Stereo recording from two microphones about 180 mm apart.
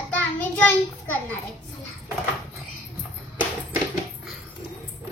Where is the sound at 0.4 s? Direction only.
10° left (ahead or behind).